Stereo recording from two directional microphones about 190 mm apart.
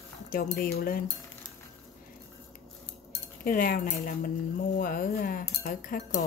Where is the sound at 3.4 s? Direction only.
45° left (ahead or behind).